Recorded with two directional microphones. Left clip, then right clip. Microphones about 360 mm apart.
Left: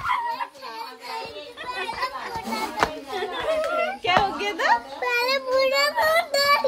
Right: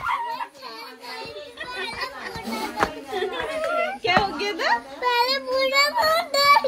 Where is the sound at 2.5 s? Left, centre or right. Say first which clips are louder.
Even; centre.